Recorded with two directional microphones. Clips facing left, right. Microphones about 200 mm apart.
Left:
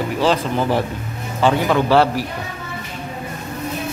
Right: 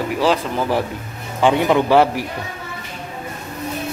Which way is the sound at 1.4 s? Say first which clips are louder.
Right 1 dB; 15° right (ahead or behind).